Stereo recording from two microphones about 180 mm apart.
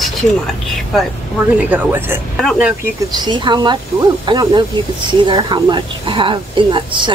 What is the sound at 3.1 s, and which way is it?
Speech, 25° right (ahead or behind).